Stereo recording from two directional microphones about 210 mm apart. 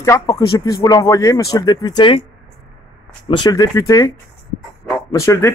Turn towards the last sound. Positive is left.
turn(degrees=15)  # may be behind; listen again after turning